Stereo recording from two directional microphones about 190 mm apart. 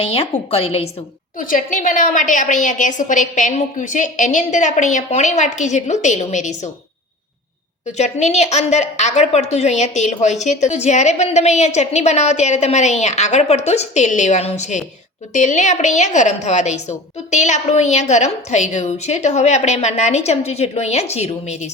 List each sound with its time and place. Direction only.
0.0 s a woman's voice: 30° left (ahead or behind)
1.4 s a woman's voice: 45° left (ahead or behind)
7.9 s a woman's voice: 35° left (ahead or behind)